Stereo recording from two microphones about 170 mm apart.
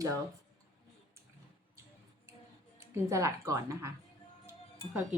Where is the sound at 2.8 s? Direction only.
15° right (ahead or behind).